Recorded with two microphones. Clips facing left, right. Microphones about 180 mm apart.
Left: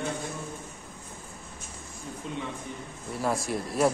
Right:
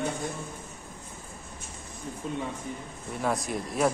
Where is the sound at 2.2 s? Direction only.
45° right (ahead or behind).